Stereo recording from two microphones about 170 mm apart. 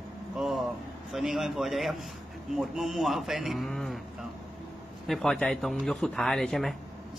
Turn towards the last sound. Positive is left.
turn(degrees=0)  # may be behind; listen again after turning